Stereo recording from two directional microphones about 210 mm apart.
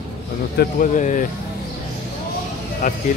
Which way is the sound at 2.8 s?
35° left (ahead or behind).